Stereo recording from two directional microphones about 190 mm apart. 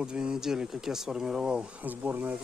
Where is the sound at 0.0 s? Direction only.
5° right (ahead or behind).